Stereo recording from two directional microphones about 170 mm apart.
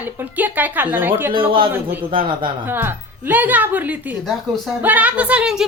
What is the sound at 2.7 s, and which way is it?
A woman's voice, 10° right (ahead or behind).